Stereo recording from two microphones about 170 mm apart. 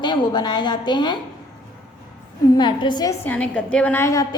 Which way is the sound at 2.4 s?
25° left (ahead or behind).